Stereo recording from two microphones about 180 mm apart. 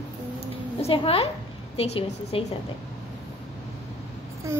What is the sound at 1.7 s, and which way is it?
Speech, 35° left (ahead or behind).